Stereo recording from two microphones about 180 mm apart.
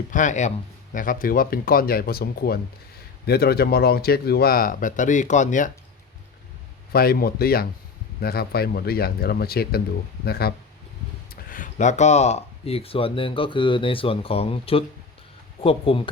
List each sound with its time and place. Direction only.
0.1 s speech: 45° left (ahead or behind)
6.9 s speech: 55° left (ahead or behind); by 16.0 s 30° left (ahead or behind)